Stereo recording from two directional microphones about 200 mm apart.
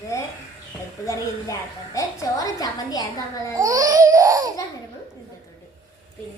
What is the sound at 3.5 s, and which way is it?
Baby cry, 15° right (ahead or behind).